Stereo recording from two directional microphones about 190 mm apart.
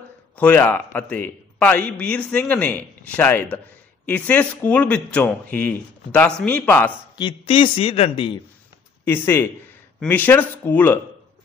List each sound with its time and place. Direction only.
0.4 s a man's voice: 10° left (ahead or behind)
7.2 s a man's voice: 25° left (ahead or behind)
9.0 s a man's voice: 10° left (ahead or behind)